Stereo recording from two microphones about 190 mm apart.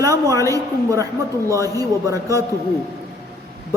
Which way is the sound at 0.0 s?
15° right (ahead or behind).